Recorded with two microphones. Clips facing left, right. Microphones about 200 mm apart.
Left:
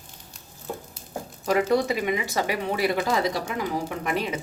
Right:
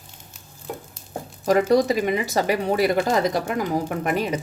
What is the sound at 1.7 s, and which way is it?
Speech, 40° right (ahead or behind).